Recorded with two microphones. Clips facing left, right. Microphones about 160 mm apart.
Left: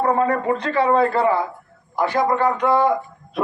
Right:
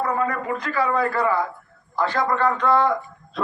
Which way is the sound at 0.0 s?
30° left (ahead or behind).